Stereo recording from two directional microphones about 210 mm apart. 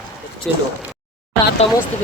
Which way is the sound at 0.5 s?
Centre (ahead or behind).